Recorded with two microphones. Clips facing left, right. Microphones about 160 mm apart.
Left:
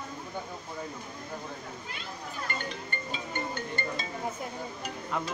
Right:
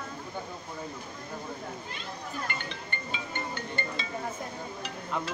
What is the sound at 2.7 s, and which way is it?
Music, 40° left (ahead or behind).